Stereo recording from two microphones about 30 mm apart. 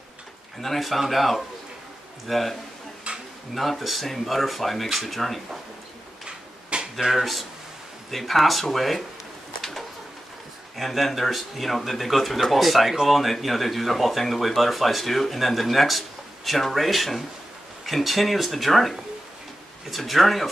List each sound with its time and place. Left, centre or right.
0.6 s speech: centre
3.1 s tick-tock: right
3.5 s speech: centre
6.2 s tick-tock: right
7.0 s speech: centre
10.8 s speech: centre